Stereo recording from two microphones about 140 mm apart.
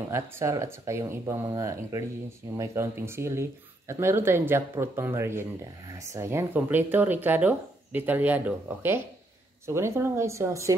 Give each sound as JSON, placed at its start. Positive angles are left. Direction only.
{"t": 0.1, "sound": "speech", "side_deg": -20}